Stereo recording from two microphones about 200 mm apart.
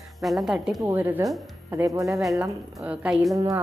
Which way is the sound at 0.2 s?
Centre (ahead or behind).